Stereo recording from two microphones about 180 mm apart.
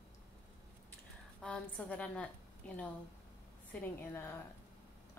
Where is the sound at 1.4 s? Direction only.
5° left (ahead or behind).